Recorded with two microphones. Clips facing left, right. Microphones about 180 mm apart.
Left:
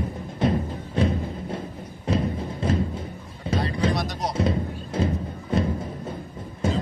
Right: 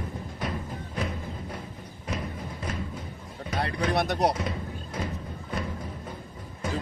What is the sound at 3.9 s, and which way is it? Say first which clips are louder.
Music: right 3 dB; 60° right (ahead or behind).